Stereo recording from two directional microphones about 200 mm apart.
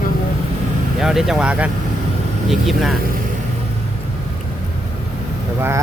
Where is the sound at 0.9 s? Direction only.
Centre (ahead or behind).